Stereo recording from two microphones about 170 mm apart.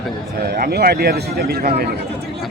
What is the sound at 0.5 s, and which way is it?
Speech, 65° right (ahead or behind).